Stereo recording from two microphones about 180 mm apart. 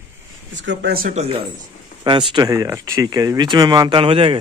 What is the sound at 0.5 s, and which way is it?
Speech, 85° right.